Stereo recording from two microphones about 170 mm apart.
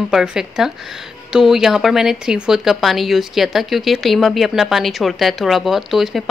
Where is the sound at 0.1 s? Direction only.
5° right (ahead or behind).